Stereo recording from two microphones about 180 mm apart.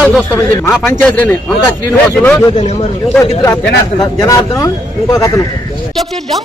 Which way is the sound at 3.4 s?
15° left (ahead or behind).